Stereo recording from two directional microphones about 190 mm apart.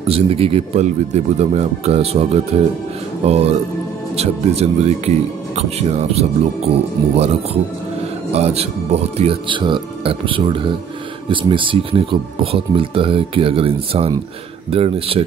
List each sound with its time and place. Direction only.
0.1 s speech: 30° right (ahead or behind)
8.3 s speech: 35° right (ahead or behind)